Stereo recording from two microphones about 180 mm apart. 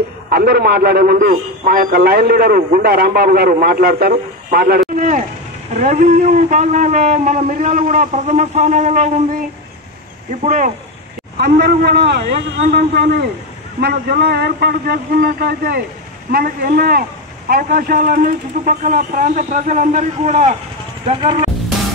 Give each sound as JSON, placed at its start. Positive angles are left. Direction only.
{"t": 0.3, "sound": "a man's voice", "side_deg": -60}
{"t": 10.4, "sound": "a man's voice", "side_deg": -45}
{"t": 11.3, "sound": "a man's voice", "side_deg": -65}